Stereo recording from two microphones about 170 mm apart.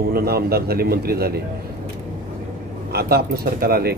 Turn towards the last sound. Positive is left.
turn(degrees=-65)  # may be behind; listen again after turning